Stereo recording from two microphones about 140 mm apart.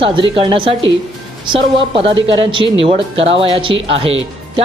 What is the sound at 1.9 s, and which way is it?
Speech, 40° right (ahead or behind).